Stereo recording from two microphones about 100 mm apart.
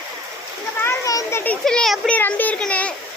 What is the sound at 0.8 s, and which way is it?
Children playing, 30° left (ahead or behind).